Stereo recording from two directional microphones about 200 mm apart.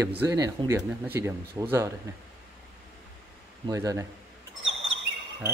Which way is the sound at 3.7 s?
15° right (ahead or behind).